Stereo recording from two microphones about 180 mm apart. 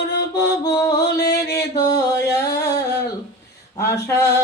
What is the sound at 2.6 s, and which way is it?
Humming, 15° left (ahead or behind).